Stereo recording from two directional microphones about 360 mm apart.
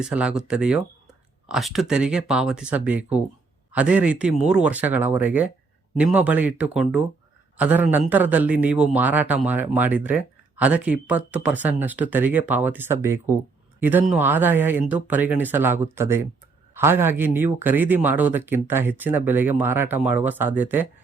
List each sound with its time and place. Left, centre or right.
0.0 s a man's voice: centre